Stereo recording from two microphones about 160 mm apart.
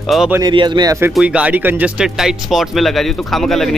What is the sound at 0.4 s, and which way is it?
Speech, 30° right (ahead or behind).